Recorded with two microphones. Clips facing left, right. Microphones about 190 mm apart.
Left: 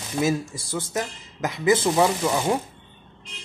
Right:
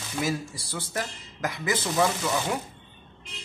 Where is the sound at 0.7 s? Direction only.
20° left (ahead or behind).